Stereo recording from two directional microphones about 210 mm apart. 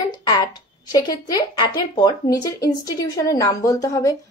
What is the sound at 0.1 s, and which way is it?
A woman's voice, 20° left (ahead or behind).